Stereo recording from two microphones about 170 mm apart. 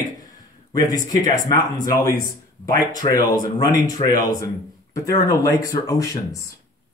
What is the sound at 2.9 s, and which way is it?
Speech, 20° left (ahead or behind).